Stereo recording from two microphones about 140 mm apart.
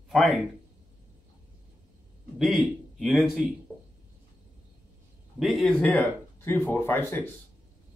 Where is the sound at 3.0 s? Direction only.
Centre (ahead or behind).